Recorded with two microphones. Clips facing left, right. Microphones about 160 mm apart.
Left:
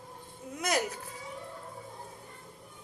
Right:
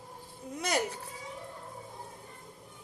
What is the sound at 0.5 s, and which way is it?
Speech, 30° right (ahead or behind).